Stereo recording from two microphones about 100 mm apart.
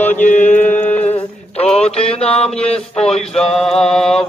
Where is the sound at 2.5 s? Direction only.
90° left.